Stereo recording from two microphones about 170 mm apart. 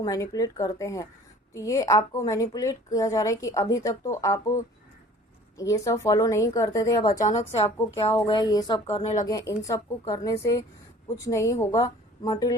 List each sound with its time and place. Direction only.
0.0 s a woman's voice: 20° left (ahead or behind)
7.9 s a woman's voice: 30° left (ahead or behind)
9.2 s a woman's voice: 20° left (ahead or behind)